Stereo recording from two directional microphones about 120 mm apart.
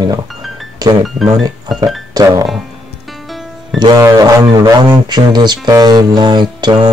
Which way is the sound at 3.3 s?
Centre (ahead or behind).